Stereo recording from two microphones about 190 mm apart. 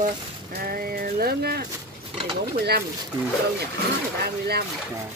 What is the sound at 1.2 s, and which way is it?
Speech, 55° right (ahead or behind).